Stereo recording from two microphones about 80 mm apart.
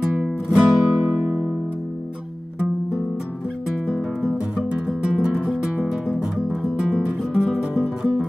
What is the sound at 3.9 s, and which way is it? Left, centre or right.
Music, centre.